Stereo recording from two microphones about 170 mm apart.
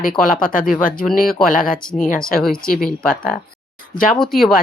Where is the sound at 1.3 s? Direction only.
Centre (ahead or behind).